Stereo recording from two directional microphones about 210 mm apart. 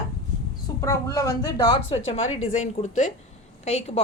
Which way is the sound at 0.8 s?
15° left (ahead or behind).